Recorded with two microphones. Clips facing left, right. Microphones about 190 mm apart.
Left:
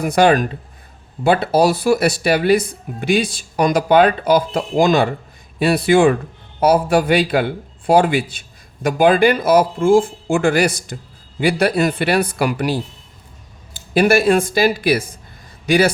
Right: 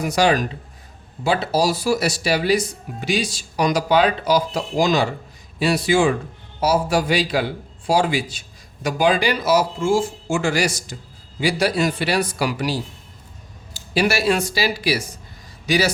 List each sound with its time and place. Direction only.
0.0 s a man's voice: 55° left (ahead or behind)